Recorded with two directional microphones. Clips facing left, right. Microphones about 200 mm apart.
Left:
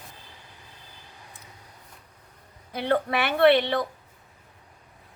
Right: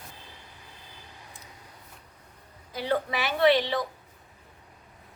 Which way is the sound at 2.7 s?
60° left (ahead or behind).